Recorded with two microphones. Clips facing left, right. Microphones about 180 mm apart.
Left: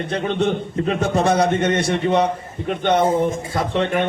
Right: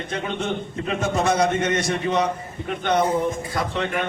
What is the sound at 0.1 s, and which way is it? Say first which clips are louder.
A man's voice: left 6 dB; 35° left (ahead or behind).